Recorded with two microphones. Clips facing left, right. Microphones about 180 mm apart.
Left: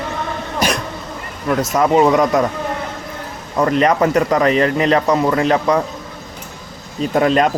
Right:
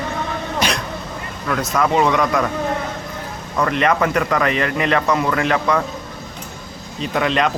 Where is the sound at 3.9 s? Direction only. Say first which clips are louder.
Left 4 dB; 20° left (ahead or behind).